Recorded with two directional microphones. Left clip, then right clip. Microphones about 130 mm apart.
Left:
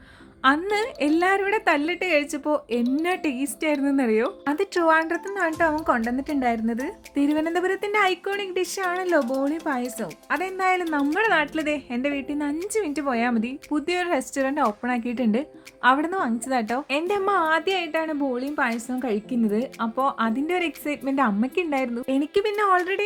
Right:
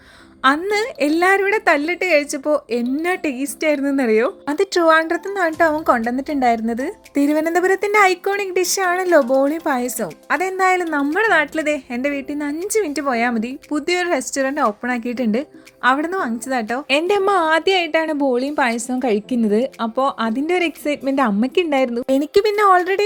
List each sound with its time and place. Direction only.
0.6 s a woman's voice: 15° right (ahead or behind)
16.9 s a woman's voice: 45° right (ahead or behind)